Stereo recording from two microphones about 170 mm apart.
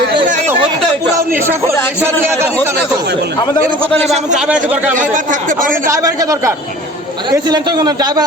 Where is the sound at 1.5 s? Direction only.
15° right (ahead or behind).